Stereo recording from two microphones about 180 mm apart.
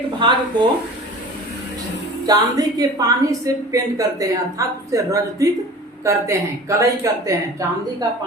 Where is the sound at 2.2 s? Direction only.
20° right (ahead or behind).